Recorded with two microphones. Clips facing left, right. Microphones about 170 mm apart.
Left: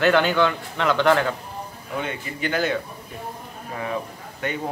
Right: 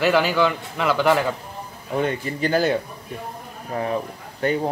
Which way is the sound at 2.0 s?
35° right (ahead or behind).